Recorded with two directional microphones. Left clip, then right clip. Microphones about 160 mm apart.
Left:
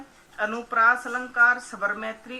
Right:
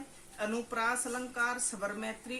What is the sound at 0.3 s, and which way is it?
A woman's voice, 30° right (ahead or behind).